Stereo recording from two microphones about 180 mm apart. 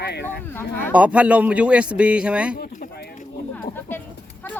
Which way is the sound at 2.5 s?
55° left (ahead or behind).